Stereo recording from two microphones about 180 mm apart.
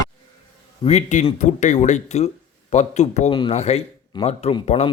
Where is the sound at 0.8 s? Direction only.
35° left (ahead or behind).